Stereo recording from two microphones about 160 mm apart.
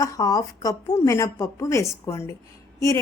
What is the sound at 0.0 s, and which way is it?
A woman's voice, 20° left (ahead or behind).